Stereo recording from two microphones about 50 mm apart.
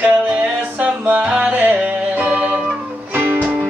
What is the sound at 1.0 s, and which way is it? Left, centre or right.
Music, right.